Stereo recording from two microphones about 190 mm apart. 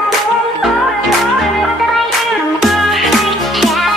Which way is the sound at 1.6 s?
Centre (ahead or behind).